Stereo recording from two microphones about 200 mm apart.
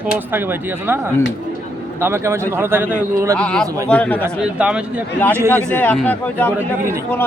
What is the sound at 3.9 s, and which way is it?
Speech, 5° left (ahead or behind).